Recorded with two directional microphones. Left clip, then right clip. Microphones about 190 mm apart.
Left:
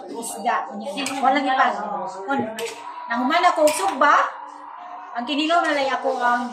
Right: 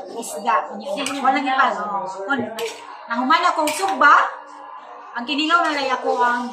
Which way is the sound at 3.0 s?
20° right (ahead or behind).